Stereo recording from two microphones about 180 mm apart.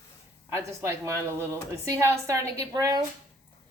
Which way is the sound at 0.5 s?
15° right (ahead or behind).